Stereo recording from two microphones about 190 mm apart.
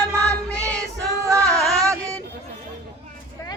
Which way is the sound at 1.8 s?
15° right (ahead or behind).